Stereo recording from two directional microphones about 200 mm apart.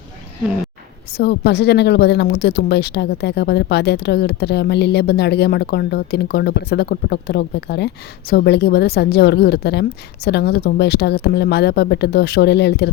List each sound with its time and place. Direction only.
1.1 s speech: 55° left (ahead or behind)